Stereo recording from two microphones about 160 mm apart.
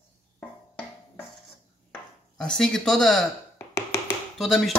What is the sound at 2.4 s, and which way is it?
Speech, 5° left (ahead or behind).